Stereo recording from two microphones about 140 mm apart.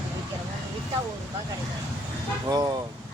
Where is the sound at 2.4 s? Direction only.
25° right (ahead or behind).